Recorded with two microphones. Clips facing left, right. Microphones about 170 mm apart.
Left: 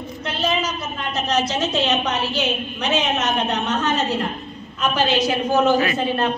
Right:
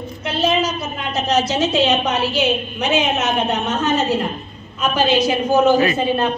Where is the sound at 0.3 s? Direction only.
10° right (ahead or behind).